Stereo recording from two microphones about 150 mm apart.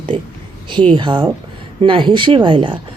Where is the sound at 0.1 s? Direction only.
35° right (ahead or behind).